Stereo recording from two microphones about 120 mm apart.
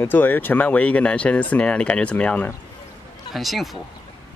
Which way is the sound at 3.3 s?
Centre (ahead or behind).